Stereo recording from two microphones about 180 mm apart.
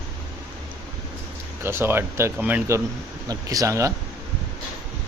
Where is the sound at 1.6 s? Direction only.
15° right (ahead or behind).